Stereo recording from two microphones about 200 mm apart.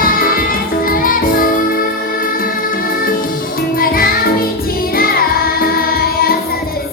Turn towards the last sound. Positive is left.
turn(degrees=50)  # may be behind; listen again after turning